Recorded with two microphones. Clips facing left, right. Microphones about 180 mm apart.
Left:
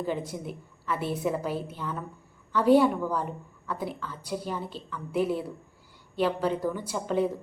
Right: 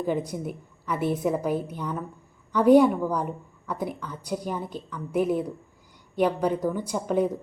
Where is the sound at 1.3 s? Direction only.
15° right (ahead or behind).